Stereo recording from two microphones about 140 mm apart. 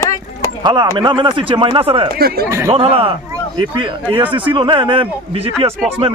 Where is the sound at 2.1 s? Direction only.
90° right.